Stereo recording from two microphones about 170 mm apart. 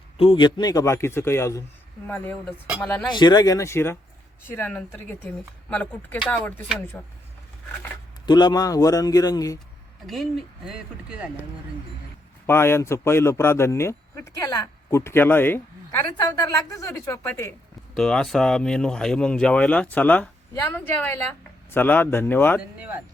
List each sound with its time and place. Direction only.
0.2 s a man's voice: 30° left (ahead or behind); by 3.1 s 10° left (ahead or behind)
3.1 s a man's voice: 25° left (ahead or behind); by 7.0 s 5° left (ahead or behind)
8.3 s a man's voice: 25° left (ahead or behind)
10.1 s speech: centre (ahead or behind)
12.5 s speech: 15° left (ahead or behind)
17.9 s speech: 5° left (ahead or behind)